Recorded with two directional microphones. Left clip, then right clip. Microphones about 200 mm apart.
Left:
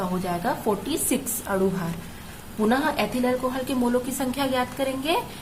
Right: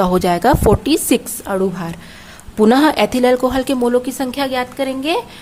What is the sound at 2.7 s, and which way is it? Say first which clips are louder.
A woman's voice: right 10 dB; 50° right (ahead or behind).